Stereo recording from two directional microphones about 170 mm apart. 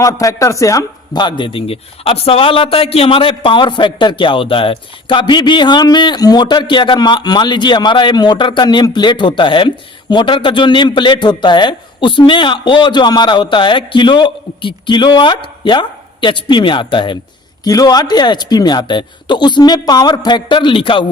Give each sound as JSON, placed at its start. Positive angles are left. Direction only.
{"t": 0.0, "sound": "speech", "side_deg": 20}